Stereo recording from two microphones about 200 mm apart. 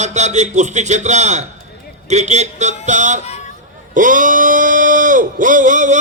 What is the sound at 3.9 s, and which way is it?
Speech, 40° right (ahead or behind).